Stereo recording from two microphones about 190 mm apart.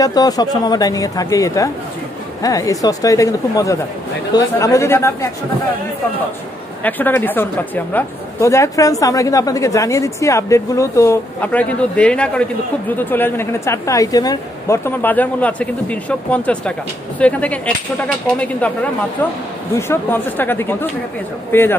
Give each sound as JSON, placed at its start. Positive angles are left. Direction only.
{"t": 0.0, "sound": "speech", "side_deg": 20}
{"t": 6.8, "sound": "speech", "side_deg": 10}
{"t": 19.9, "sound": "speech", "side_deg": 10}